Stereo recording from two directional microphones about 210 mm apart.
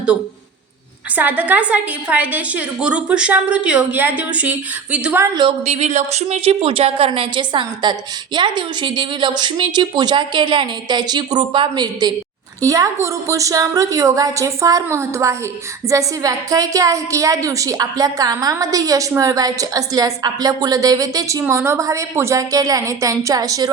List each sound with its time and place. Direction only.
1.1 s a woman's voice: 5° right (ahead or behind)